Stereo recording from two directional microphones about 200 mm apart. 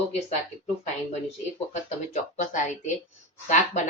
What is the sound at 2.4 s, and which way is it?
Speech, 40° left (ahead or behind).